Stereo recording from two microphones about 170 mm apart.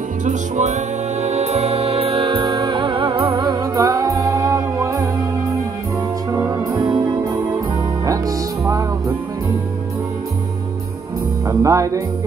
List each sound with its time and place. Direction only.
0.2 s music: 45° right (ahead or behind); by 5.0 s 20° right (ahead or behind)
6.3 s music: 20° right (ahead or behind)
11.4 s music: 20° right (ahead or behind)